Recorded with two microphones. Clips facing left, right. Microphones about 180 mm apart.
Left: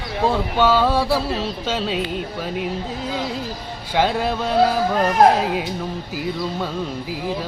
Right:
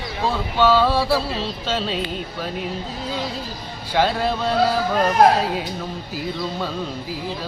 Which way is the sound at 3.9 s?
10° left (ahead or behind).